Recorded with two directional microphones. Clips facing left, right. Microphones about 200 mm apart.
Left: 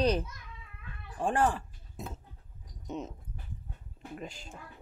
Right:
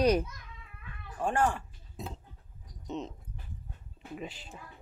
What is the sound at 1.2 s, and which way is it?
Speech, 30° left (ahead or behind).